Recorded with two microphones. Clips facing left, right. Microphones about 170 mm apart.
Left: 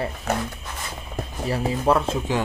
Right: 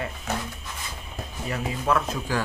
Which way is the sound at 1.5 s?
30° left (ahead or behind).